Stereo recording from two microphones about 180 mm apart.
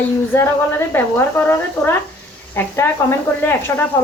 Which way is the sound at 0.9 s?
10° left (ahead or behind).